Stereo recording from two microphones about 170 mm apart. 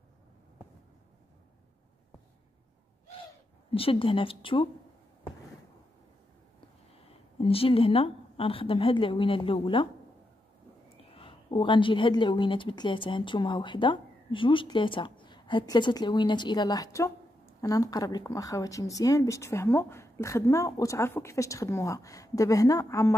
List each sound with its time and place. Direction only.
3.7 s speech: 35° left (ahead or behind)
7.1 s a woman's voice: 35° left (ahead or behind)
11.1 s speech: 30° left (ahead or behind)